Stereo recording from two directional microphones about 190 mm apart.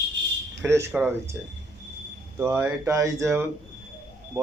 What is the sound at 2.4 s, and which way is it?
Speech, 15° right (ahead or behind).